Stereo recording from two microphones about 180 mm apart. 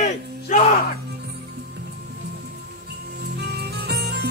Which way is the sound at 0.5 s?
45° left (ahead or behind).